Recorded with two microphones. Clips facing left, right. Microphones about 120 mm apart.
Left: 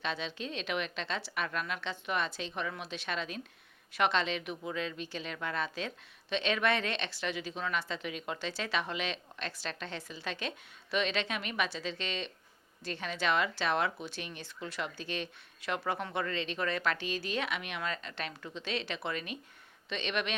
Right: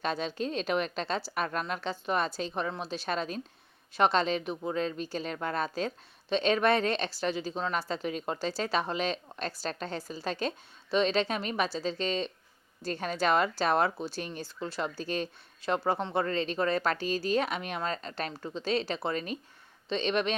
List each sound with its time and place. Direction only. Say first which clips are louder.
0.0 s speech: right 6 dB; 40° right (ahead or behind)